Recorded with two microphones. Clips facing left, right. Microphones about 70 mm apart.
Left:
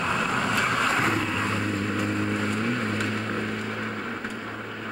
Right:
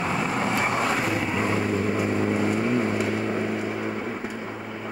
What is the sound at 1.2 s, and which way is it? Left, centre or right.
Vehicle, right.